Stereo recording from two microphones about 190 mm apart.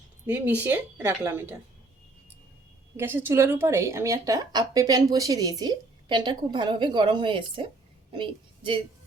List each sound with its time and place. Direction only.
0.3 s a woman's voice: 10° right (ahead or behind)
3.0 s a woman's voice: 10° right (ahead or behind); by 8.8 s 25° right (ahead or behind)